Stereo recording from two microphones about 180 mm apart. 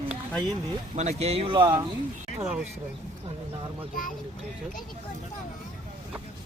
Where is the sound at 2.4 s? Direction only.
5° right (ahead or behind).